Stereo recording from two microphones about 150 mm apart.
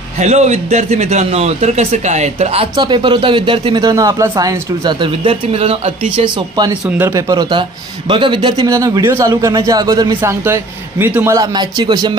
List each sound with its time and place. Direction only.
0.2 s a man's voice: 45° right (ahead or behind); by 6.7 s 30° right (ahead or behind)
6.9 s a man's voice: 20° right (ahead or behind)
11.3 s a man's voice: 25° right (ahead or behind)